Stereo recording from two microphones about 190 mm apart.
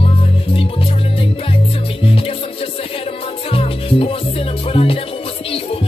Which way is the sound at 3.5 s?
30° left (ahead or behind).